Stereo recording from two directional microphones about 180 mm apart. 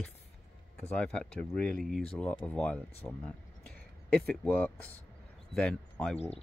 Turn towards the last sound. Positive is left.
turn(degrees=5)  # may be behind; listen again after turning